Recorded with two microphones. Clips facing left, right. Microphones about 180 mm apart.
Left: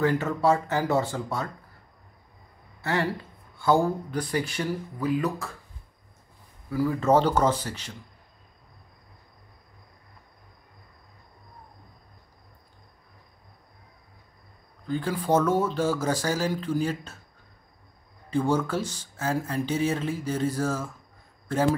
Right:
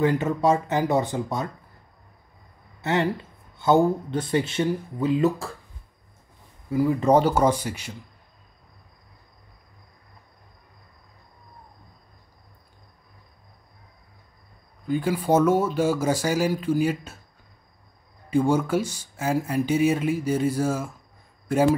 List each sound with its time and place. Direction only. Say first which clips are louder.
0.0 s speech: right 2 dB; 20° right (ahead or behind)
2.8 s speech: right 3 dB; 20° right (ahead or behind)
6.7 s speech: right 3 dB; 20° right (ahead or behind)
14.9 s speech: right 3 dB; 10° right (ahead or behind)
18.3 s speech: right 4 dB; 10° right (ahead or behind)